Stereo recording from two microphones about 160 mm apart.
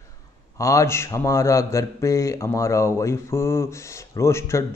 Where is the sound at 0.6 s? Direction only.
20° left (ahead or behind).